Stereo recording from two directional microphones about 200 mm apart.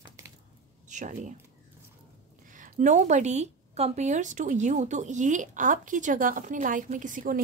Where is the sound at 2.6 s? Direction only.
40° right (ahead or behind).